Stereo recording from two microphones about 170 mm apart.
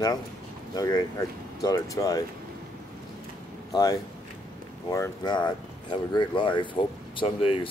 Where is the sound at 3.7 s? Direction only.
20° left (ahead or behind).